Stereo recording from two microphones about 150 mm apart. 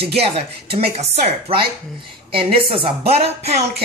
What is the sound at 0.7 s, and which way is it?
A woman's voice, 40° right (ahead or behind).